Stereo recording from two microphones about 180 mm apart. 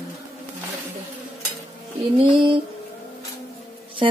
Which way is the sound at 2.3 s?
25° right (ahead or behind).